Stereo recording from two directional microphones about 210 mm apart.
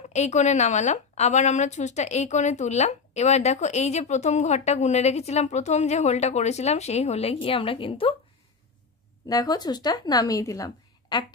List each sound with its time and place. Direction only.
0.1 s a woman's voice: 35° left (ahead or behind)
9.3 s a woman's voice: 15° left (ahead or behind)